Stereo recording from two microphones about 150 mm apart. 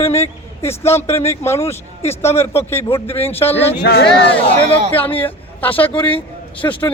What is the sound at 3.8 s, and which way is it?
Speech, 90° left.